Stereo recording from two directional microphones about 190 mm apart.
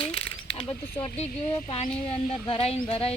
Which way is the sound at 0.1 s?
30° left (ahead or behind).